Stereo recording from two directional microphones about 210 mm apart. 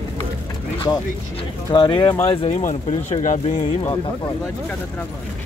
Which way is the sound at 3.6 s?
25° left (ahead or behind).